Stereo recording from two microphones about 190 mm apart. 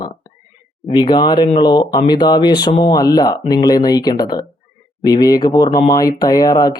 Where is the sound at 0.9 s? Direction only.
25° left (ahead or behind).